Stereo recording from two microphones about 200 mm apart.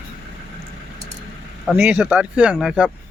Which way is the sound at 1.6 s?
5° right (ahead or behind).